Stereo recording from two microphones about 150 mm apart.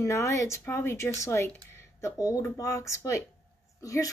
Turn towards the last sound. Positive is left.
turn(degrees=20)  # may be behind; listen again after turning